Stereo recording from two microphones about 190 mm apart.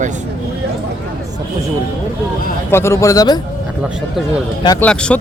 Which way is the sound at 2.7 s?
15° left (ahead or behind).